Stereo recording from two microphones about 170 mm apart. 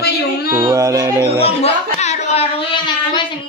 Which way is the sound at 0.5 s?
20° right (ahead or behind).